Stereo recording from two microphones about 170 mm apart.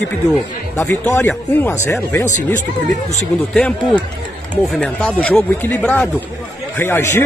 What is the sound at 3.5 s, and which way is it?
Speech, 5° left (ahead or behind).